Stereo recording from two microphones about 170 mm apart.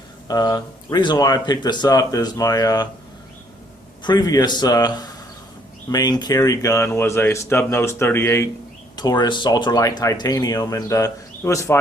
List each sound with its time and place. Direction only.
0.3 s speech: 25° left (ahead or behind)
4.0 s speech: 25° left (ahead or behind)